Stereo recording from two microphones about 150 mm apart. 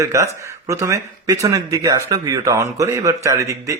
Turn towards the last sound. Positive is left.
turn(degrees=-20)  # may be behind; listen again after turning